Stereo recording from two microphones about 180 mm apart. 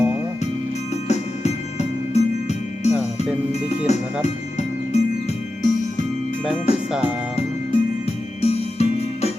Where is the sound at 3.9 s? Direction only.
40° left (ahead or behind).